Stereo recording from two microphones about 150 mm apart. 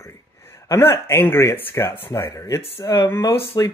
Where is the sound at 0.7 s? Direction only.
15° left (ahead or behind).